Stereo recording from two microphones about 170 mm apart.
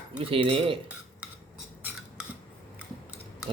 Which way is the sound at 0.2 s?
35° right (ahead or behind).